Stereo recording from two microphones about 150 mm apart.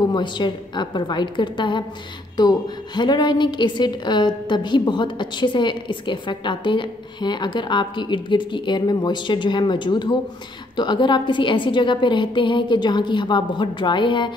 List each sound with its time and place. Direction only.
0.1 s a woman's voice: 30° left (ahead or behind)